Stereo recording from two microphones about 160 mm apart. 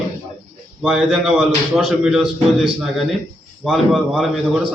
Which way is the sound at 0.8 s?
5° right (ahead or behind).